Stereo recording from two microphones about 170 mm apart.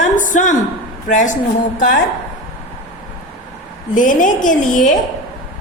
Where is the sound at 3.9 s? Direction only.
50° left (ahead or behind).